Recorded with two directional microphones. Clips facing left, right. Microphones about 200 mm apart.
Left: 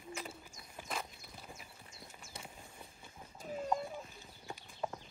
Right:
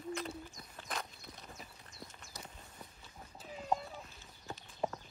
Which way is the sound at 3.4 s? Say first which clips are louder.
Left 7 dB; 45° left (ahead or behind).